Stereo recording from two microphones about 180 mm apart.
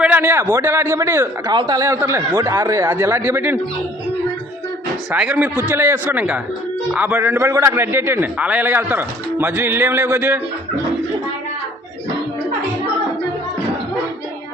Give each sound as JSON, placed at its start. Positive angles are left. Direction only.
{"t": 0.0, "sound": "a man's voice", "side_deg": -10}
{"t": 5.1, "sound": "a man's voice", "side_deg": -10}